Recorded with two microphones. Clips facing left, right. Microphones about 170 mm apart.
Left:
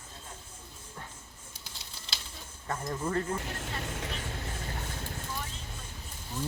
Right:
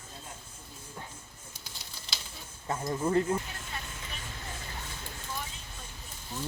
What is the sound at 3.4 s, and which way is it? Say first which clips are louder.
Speech: left 5 dB; 65° left (ahead or behind).